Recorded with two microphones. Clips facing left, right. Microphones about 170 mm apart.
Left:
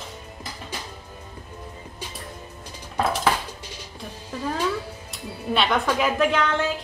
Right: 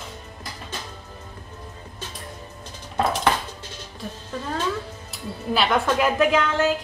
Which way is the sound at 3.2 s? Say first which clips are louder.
Right 1 dB; 10° left (ahead or behind).